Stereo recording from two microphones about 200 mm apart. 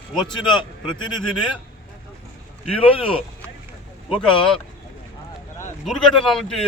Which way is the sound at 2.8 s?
30° left (ahead or behind).